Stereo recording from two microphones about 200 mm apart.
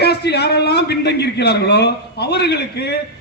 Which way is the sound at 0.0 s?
55° left (ahead or behind).